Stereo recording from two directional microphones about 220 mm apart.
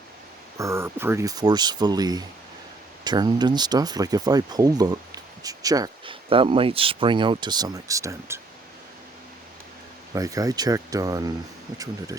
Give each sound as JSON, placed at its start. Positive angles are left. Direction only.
{"t": 0.6, "sound": "speech", "side_deg": -10}
{"t": 10.1, "sound": "speech", "side_deg": -15}